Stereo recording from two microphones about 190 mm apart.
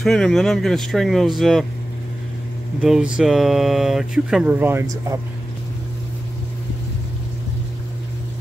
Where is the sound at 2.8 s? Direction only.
5° right (ahead or behind).